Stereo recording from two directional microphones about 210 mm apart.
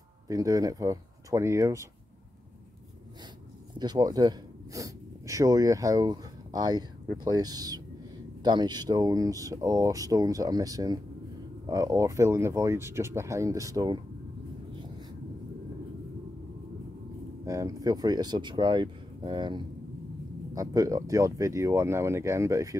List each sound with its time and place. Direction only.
0.3 s speech: 15° right (ahead or behind)
3.7 s speech: 20° right (ahead or behind)
17.5 s speech: 15° right (ahead or behind)